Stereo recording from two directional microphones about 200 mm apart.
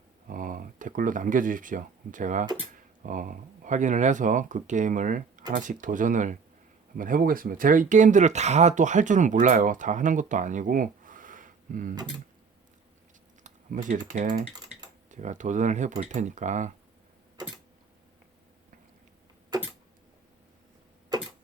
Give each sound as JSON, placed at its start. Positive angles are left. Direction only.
{"t": 0.3, "sound": "speech", "side_deg": -45}
{"t": 13.4, "sound": "typing", "side_deg": -40}
{"t": 14.1, "sound": "speech", "side_deg": -40}